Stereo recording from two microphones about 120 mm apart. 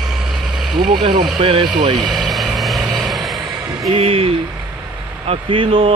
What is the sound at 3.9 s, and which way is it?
Speech, 50° right (ahead or behind).